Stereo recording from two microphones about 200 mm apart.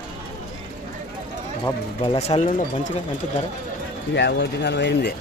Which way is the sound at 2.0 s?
30° left (ahead or behind).